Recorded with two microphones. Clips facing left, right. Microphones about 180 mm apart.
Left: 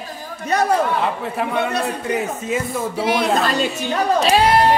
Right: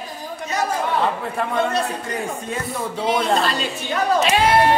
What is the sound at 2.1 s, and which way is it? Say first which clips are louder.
Speech: left 5 dB; 5° left (ahead or behind).